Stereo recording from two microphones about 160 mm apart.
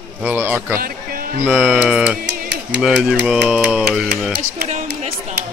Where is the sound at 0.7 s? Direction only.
65° right (ahead or behind).